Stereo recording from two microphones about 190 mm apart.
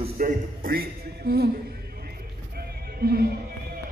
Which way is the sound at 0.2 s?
50° right (ahead or behind).